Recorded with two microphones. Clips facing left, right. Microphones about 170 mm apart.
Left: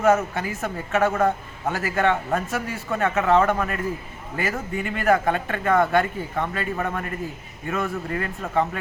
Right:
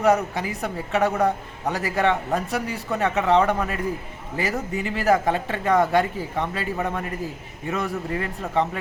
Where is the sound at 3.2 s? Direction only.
20° right (ahead or behind).